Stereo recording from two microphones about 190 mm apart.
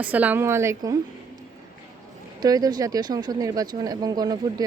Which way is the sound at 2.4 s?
20° right (ahead or behind).